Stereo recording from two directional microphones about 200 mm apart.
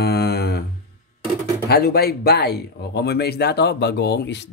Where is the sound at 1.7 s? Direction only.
50° left (ahead or behind).